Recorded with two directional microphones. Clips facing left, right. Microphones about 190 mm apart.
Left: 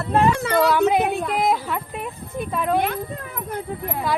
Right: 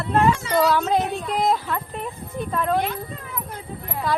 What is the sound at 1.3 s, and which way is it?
A woman's voice, 5° left (ahead or behind).